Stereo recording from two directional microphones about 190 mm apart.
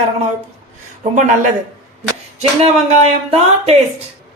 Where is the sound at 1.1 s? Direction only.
40° right (ahead or behind).